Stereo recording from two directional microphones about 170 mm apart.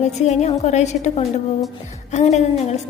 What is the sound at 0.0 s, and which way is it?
A woman's voice, 40° left (ahead or behind).